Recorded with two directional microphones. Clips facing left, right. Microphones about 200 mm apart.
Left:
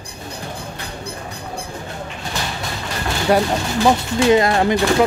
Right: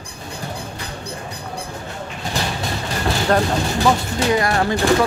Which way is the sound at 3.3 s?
10° left (ahead or behind).